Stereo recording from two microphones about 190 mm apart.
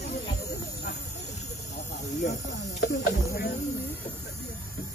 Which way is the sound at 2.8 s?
60° left (ahead or behind).